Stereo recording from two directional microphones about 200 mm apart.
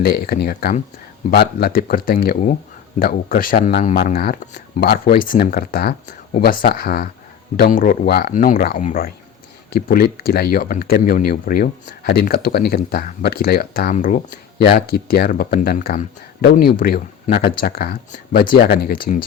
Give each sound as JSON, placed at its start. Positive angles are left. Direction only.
{"t": 0.0, "sound": "speech", "side_deg": 50}
{"t": 14.6, "sound": "speech", "side_deg": 55}